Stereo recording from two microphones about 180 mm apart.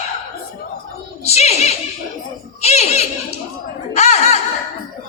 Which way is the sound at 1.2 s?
35° left (ahead or behind).